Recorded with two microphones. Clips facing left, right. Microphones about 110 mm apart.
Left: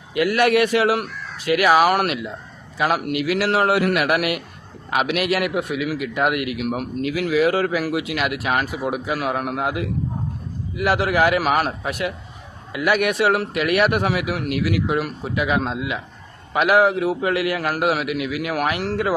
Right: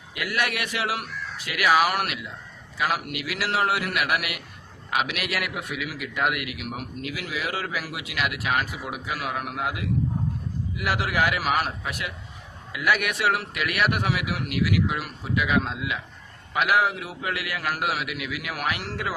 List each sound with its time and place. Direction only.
0.1 s a man's voice: 35° left (ahead or behind)